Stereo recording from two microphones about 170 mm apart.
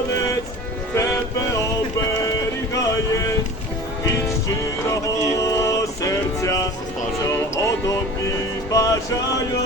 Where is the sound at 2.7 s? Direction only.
20° left (ahead or behind).